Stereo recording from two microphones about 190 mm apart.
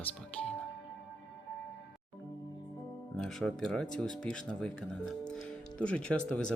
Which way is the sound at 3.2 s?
Centre (ahead or behind).